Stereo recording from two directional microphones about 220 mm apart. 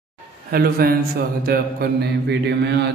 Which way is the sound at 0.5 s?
40° right (ahead or behind).